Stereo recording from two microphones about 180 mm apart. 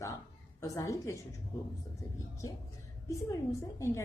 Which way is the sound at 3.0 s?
15° left (ahead or behind).